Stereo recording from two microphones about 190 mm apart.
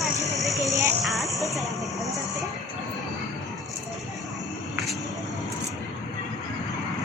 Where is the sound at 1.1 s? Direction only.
Centre (ahead or behind).